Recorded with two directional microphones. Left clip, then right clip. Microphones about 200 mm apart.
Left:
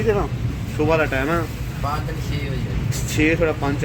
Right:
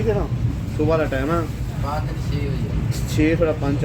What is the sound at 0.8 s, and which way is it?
Speech, 5° left (ahead or behind).